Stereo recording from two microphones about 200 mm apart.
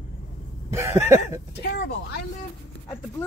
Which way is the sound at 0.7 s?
15° right (ahead or behind).